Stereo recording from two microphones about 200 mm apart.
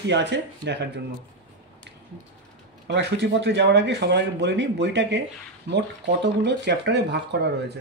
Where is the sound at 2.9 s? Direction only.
60° right (ahead or behind).